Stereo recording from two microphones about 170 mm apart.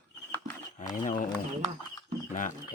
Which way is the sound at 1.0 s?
50° left (ahead or behind).